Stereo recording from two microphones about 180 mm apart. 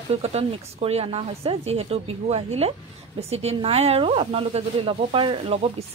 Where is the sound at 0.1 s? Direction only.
35° right (ahead or behind).